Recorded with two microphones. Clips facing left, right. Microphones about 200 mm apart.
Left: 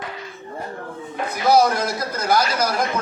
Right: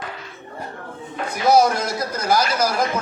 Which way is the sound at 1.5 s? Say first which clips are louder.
Right 1 dB; 25° right (ahead or behind).